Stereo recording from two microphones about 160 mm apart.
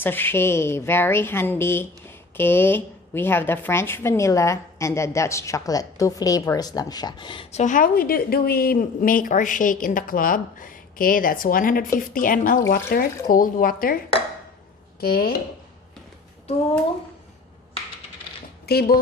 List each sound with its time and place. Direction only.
0.0 s speech: 15° left (ahead or behind); by 7.4 s 30° left (ahead or behind)
7.5 s a woman's voice: 50° left (ahead or behind)
15.0 s chopping: 70° left (ahead or behind)
18.6 s speech: 80° left